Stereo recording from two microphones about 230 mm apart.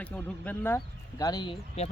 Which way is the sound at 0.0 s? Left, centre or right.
Centre.